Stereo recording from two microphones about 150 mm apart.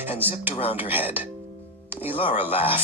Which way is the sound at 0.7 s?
15° right (ahead or behind).